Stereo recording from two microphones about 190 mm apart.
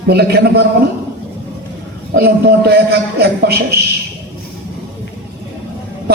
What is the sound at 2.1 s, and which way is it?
A man's voice, 55° right (ahead or behind).